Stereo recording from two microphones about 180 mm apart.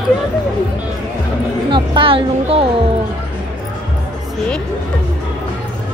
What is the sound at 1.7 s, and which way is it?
Speech, 30° right (ahead or behind).